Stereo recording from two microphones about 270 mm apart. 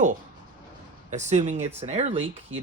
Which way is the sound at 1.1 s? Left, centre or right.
Right.